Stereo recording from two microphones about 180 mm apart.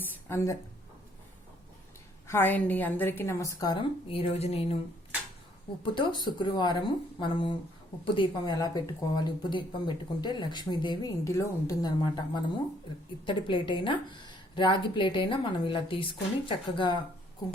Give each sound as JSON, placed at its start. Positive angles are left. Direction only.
{"t": 0.3, "sound": "a woman's voice", "side_deg": 15}
{"t": 2.2, "sound": "a woman's voice", "side_deg": 10}
{"t": 5.8, "sound": "speech", "side_deg": 25}